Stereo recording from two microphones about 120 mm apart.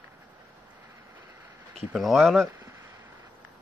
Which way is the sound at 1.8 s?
Centre (ahead or behind).